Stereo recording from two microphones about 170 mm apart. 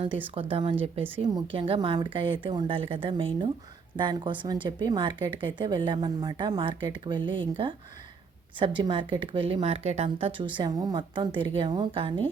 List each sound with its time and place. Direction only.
0.3 s a woman's voice: 30° right (ahead or behind)